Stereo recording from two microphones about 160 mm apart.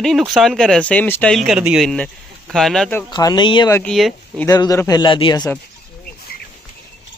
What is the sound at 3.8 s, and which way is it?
Speech, centre (ahead or behind).